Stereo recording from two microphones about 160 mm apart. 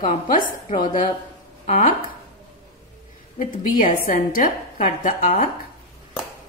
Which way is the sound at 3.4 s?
60° left (ahead or behind).